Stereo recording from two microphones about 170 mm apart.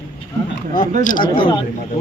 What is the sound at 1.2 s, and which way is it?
Speech, 30° left (ahead or behind).